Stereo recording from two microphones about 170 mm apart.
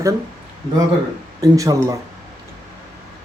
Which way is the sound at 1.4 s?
20° right (ahead or behind).